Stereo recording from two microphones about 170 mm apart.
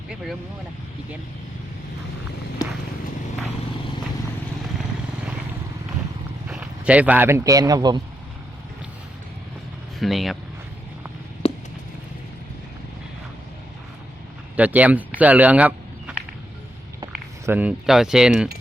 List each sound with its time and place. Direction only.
6.5 s speech: 5° right (ahead or behind); by 8.0 s 25° right (ahead or behind)
10.0 s cutlery: centre (ahead or behind)
11.4 s a sound: 35° left (ahead or behind)
14.5 s speech: 10° right (ahead or behind)
17.4 s cutlery: 10° right (ahead or behind)